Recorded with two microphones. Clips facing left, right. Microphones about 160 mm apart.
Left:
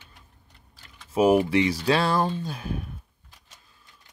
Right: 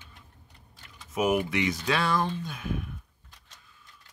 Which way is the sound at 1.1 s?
30° left (ahead or behind).